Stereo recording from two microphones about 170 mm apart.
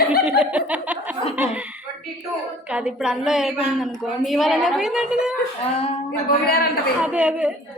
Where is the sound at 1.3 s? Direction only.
10° right (ahead or behind).